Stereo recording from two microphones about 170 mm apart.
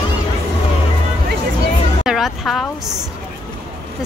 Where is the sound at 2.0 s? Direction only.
Centre (ahead or behind).